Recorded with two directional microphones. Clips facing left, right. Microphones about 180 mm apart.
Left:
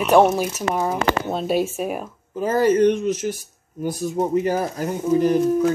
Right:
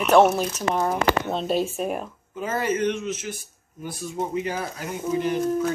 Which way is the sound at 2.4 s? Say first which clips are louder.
Left 8 dB; 35° left (ahead or behind).